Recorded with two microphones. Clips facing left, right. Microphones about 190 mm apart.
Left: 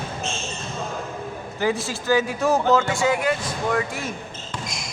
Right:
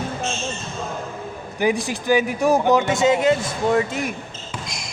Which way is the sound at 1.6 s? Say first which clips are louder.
Right 3 dB; 15° right (ahead or behind).